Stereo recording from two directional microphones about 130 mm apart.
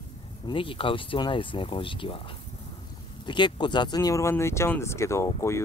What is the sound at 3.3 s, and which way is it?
Speech, 35° left (ahead or behind).